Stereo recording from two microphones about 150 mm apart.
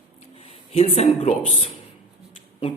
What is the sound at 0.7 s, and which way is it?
Speech, 45° left (ahead or behind).